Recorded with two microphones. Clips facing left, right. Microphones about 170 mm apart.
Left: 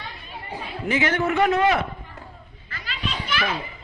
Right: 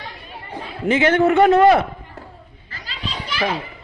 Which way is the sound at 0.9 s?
25° right (ahead or behind).